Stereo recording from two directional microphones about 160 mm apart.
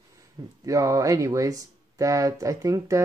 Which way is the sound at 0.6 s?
20° right (ahead or behind).